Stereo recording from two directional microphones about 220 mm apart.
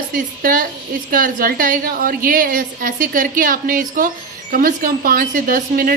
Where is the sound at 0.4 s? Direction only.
40° right (ahead or behind).